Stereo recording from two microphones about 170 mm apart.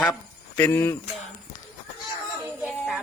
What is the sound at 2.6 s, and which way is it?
Music, centre (ahead or behind).